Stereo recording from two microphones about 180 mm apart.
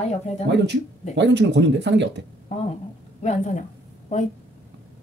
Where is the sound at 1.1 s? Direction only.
75° right (ahead or behind).